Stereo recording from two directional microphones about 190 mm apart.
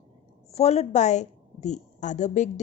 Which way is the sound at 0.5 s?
35° left (ahead or behind).